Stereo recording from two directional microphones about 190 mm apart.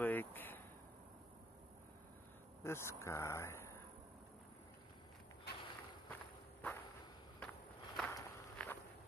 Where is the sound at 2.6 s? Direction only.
15° left (ahead or behind).